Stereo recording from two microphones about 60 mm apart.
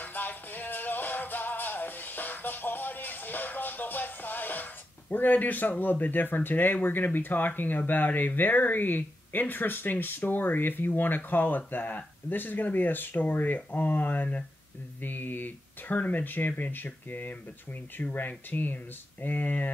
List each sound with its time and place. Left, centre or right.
0.0 s music: left
5.1 s speech: left